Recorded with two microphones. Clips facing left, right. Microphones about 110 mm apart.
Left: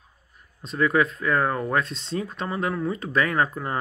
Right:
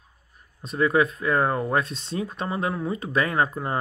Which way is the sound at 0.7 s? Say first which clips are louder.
Right 1 dB; 25° right (ahead or behind).